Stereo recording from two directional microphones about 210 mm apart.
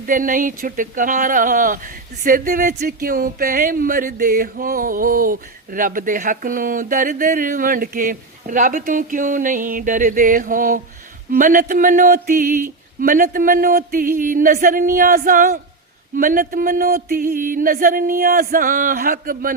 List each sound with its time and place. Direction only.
0.0 s speech: 40° right (ahead or behind)